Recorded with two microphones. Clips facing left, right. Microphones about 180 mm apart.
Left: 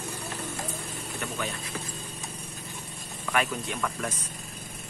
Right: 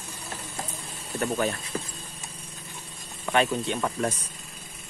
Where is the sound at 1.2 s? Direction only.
40° right (ahead or behind).